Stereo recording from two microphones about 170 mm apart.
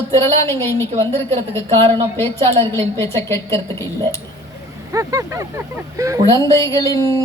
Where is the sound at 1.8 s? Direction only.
35° right (ahead or behind).